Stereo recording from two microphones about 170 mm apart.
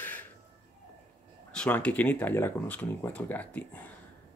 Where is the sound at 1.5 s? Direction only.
5° left (ahead or behind).